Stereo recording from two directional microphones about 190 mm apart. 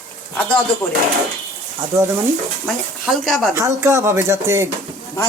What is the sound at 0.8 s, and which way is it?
Speech, 10° left (ahead or behind).